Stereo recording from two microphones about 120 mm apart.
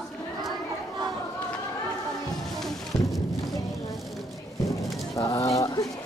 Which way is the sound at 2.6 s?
Centre (ahead or behind).